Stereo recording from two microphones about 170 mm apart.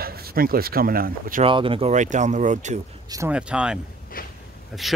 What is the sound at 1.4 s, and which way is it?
Speech, 30° right (ahead or behind).